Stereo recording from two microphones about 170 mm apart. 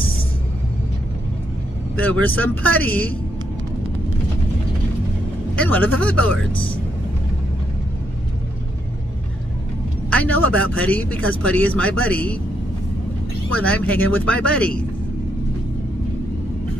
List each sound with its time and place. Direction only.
2.0 s a man's voice: 10° left (ahead or behind)
5.6 s a man's voice: 10° left (ahead or behind)
6.5 s speech: 30° left (ahead or behind)
10.0 s a man's voice: 10° left (ahead or behind)
13.7 s a man's voice: 10° left (ahead or behind)